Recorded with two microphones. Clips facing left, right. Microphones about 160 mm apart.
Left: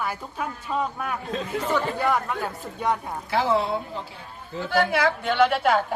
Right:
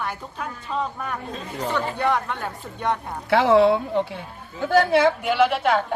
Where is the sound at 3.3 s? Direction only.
70° right (ahead or behind).